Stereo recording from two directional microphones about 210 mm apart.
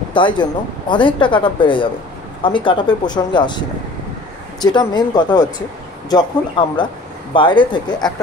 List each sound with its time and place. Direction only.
0.1 s speech: 20° left (ahead or behind)
4.6 s speech: 20° left (ahead or behind)